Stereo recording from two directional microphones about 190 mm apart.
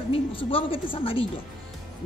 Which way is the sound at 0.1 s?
30° left (ahead or behind).